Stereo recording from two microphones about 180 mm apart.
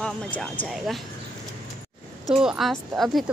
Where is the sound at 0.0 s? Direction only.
5° left (ahead or behind).